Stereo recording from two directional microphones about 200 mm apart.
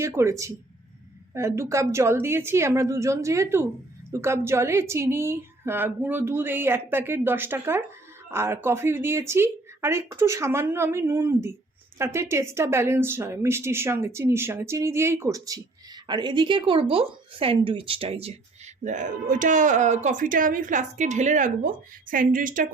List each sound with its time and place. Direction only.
0.0 s speech: 15° right (ahead or behind); by 22.7 s 45° right (ahead or behind)